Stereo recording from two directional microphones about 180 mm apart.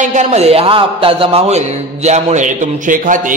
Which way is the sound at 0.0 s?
40° right (ahead or behind).